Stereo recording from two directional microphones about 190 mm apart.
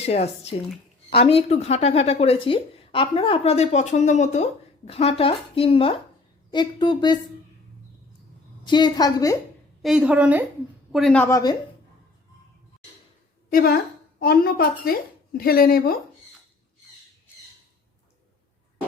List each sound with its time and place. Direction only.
0.0 s a woman's voice: 35° left (ahead or behind)
8.6 s speech: 25° left (ahead or behind)
9.8 s a woman's voice: 5° right (ahead or behind)
10.9 s a woman's voice: 5° left (ahead or behind)
13.5 s a woman's voice: 50° left (ahead or behind)